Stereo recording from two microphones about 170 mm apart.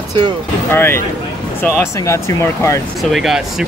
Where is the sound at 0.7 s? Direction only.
15° left (ahead or behind).